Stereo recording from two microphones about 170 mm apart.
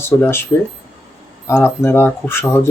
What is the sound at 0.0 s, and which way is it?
Speech, 15° left (ahead or behind).